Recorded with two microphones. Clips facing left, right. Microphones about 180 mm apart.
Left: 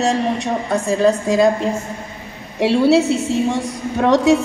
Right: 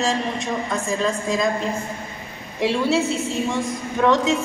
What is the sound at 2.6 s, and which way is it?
A woman's voice, 70° left (ahead or behind).